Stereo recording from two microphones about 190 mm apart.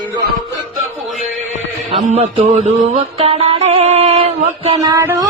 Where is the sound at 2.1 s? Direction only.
35° right (ahead or behind).